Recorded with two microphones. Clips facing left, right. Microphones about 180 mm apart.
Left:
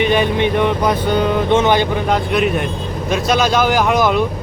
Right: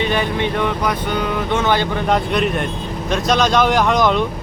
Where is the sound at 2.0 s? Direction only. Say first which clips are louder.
Left 1 dB; centre (ahead or behind).